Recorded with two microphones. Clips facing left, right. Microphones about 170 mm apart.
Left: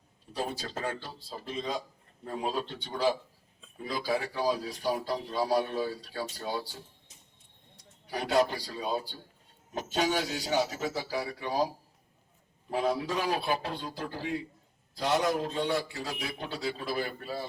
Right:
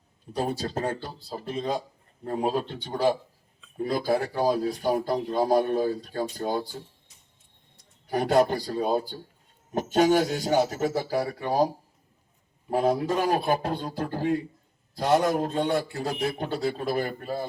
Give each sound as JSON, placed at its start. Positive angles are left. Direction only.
{"t": 0.3, "sound": "speech", "side_deg": -45}
{"t": 8.0, "sound": "speech", "side_deg": -50}
{"t": 12.7, "sound": "speech", "side_deg": -45}